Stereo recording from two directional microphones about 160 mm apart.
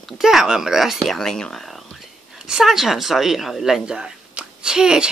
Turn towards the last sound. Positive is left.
turn(degrees=-5)  # may be behind; listen again after turning